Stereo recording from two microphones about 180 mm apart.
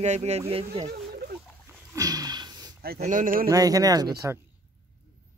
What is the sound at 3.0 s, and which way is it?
Speech, 45° right (ahead or behind).